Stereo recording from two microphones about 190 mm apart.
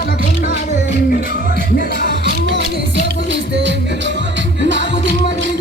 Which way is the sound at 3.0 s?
65° right (ahead or behind).